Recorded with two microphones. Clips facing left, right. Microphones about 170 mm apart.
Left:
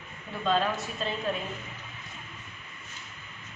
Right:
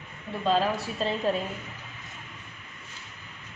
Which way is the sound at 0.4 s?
30° right (ahead or behind).